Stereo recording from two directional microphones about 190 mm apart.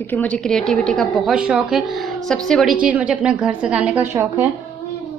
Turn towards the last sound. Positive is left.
turn(degrees=-15)  # may be behind; listen again after turning